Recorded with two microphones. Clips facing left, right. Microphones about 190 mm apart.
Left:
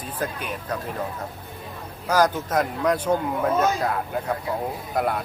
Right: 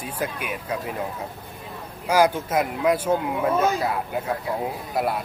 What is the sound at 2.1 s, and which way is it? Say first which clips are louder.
Speech: right 1 dB; 10° right (ahead or behind).